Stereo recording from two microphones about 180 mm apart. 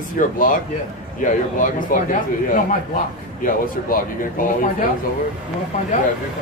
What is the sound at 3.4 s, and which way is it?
Speech, 50° left (ahead or behind).